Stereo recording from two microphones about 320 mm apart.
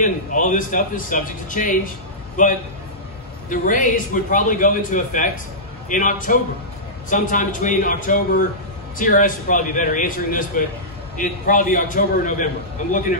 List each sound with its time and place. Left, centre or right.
0.0 s a man's voice: left